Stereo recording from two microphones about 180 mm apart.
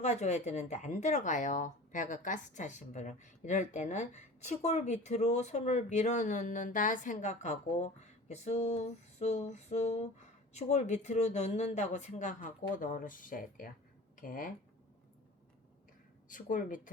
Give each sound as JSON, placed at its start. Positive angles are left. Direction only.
{"t": 0.0, "sound": "speech", "side_deg": 40}
{"t": 16.3, "sound": "speech", "side_deg": 45}